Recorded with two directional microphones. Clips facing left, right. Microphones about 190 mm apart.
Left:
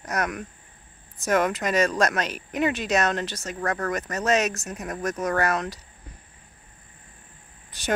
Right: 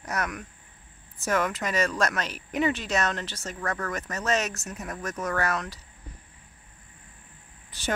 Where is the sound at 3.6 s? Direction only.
40° left (ahead or behind).